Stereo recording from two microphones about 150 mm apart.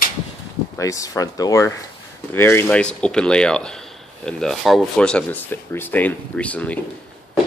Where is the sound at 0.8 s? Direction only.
20° left (ahead or behind).